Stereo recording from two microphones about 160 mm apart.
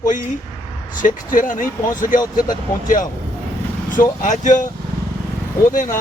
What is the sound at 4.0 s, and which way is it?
Speech, 50° left (ahead or behind).